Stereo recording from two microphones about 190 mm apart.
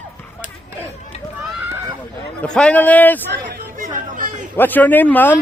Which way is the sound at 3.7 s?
40° right (ahead or behind).